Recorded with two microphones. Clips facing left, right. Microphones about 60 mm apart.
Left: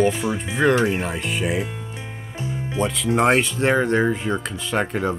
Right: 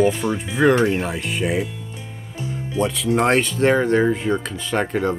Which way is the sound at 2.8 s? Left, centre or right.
Centre.